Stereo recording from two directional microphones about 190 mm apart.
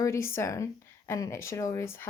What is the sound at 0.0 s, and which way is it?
A woman's voice, 15° left (ahead or behind).